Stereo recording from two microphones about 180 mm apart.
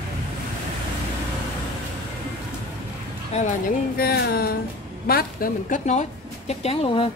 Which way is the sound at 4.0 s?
60° left (ahead or behind).